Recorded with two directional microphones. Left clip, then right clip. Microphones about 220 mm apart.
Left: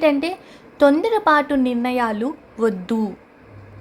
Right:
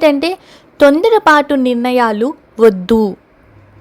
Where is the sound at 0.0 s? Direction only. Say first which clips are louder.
Right 6 dB; 30° right (ahead or behind).